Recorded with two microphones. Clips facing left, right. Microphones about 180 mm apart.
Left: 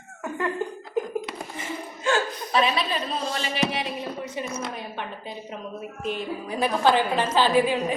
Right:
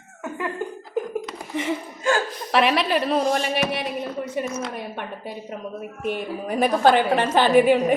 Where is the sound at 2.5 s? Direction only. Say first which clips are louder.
Right 4 dB; 75° right (ahead or behind); by 3.9 s 55° right (ahead or behind).